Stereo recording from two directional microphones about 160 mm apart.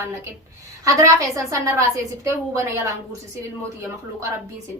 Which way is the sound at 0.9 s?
20° right (ahead or behind).